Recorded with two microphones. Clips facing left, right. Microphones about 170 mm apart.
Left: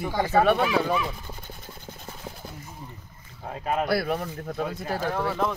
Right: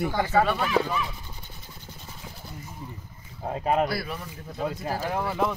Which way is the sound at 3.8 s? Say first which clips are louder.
Left 5 dB; 60° left (ahead or behind).